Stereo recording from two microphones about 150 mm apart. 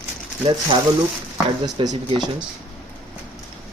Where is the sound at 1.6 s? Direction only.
30° right (ahead or behind).